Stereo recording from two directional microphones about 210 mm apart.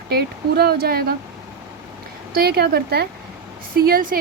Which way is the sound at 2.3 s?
50° right (ahead or behind).